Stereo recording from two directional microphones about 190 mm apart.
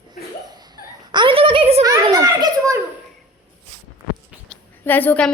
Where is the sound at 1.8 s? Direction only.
20° right (ahead or behind).